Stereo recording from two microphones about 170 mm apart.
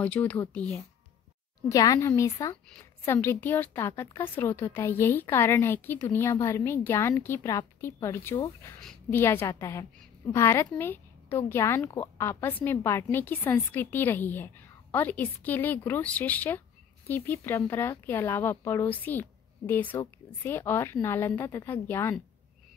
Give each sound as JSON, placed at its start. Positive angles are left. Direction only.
{"t": 0.0, "sound": "a woman's voice", "side_deg": 10}
{"t": 1.7, "sound": "a woman's voice", "side_deg": 20}